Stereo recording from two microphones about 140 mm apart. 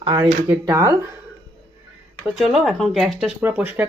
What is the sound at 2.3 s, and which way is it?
Speech, centre (ahead or behind).